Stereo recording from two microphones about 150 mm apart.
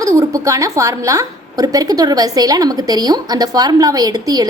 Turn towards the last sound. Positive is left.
turn(degrees=-25)  # may be behind; listen again after turning